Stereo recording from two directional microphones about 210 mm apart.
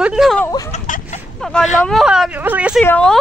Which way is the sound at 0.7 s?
35° left (ahead or behind).